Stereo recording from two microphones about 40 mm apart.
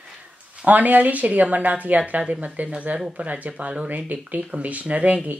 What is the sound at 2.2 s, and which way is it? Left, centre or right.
Speech, right.